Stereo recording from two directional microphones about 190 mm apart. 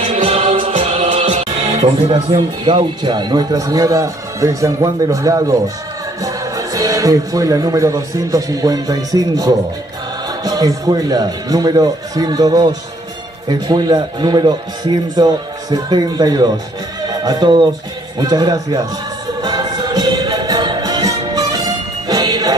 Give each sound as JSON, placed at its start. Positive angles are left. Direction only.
{"t": 0.0, "sound": "music", "side_deg": -35}
{"t": 2.3, "sound": "a man's voice", "side_deg": -25}
{"t": 19.4, "sound": "music", "side_deg": -20}